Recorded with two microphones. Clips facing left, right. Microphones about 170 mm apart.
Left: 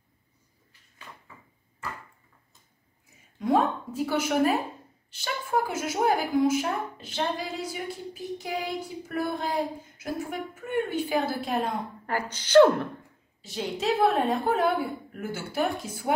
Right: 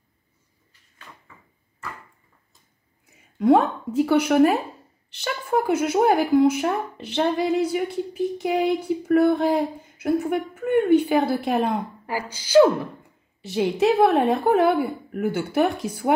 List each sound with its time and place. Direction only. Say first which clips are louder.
1.1 s drawer open or close: even; 5° left (ahead or behind)
3.3 s a woman's voice: right 6 dB; 65° right (ahead or behind)
12.1 s speech: right 1 dB; 10° right (ahead or behind)
13.4 s a woman's voice: right 10 dB; 65° right (ahead or behind)